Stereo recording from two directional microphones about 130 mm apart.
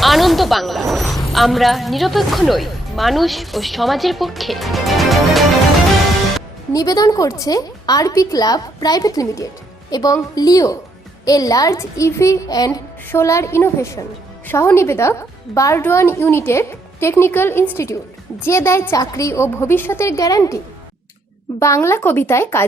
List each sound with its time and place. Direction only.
0.0 s a woman's voice: centre (ahead or behind)
6.7 s a woman's voice: 30° left (ahead or behind)
21.6 s a woman's voice: 20° left (ahead or behind)